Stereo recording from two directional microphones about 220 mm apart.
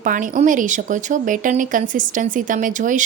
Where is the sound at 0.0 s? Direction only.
35° right (ahead or behind).